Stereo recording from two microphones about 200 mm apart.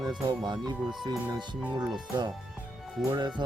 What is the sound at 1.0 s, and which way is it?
Speech, 20° right (ahead or behind).